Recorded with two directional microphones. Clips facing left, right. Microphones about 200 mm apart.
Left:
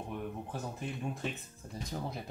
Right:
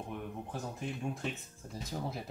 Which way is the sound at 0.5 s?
Centre (ahead or behind).